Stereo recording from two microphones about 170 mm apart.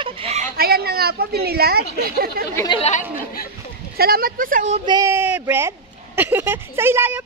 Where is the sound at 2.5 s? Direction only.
20° left (ahead or behind).